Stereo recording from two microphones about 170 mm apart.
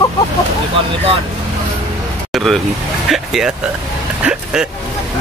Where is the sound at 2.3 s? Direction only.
Centre (ahead or behind).